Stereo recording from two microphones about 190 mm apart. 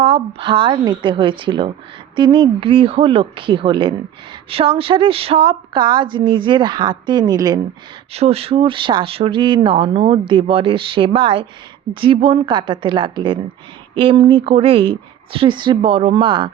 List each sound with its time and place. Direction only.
0.0 s speech: 30° right (ahead or behind)
8.1 s speech: 35° right (ahead or behind)